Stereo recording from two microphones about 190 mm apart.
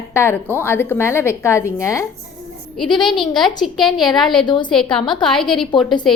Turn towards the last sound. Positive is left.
turn(degrees=0)  # may be behind; listen again after turning